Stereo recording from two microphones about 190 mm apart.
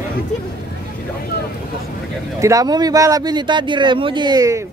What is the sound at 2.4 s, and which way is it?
Speech, 20° right (ahead or behind).